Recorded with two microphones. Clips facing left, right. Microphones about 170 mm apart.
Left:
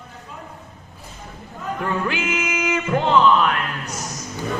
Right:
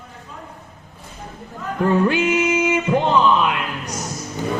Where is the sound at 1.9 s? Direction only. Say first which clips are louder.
Right 7 dB; 35° right (ahead or behind); by 3.9 s 15° right (ahead or behind).